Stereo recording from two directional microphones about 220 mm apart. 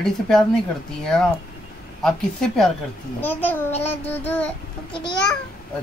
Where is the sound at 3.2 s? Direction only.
10° left (ahead or behind).